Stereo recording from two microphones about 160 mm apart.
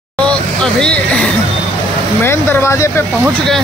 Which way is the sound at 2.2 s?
15° left (ahead or behind).